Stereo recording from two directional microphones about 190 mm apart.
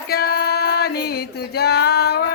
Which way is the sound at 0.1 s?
55° left (ahead or behind).